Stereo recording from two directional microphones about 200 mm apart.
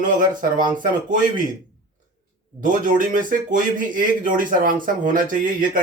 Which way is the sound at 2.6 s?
40° right (ahead or behind).